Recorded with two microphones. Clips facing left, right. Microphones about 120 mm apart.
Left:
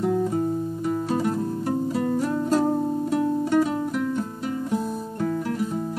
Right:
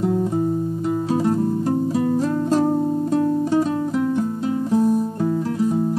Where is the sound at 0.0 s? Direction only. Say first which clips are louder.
Right 2 dB; 20° right (ahead or behind).